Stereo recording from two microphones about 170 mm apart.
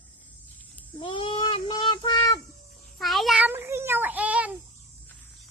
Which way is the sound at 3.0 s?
Centre (ahead or behind).